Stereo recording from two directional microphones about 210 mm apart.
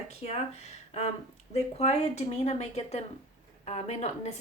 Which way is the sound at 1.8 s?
30° left (ahead or behind).